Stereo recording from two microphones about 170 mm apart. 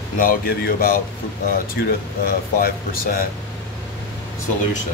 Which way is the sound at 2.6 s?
60° left (ahead or behind).